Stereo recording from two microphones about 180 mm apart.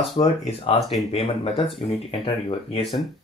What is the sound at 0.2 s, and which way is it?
Speech, 30° left (ahead or behind).